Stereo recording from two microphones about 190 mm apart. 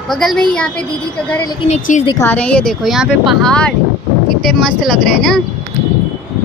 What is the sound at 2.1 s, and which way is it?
Speech, 10° left (ahead or behind).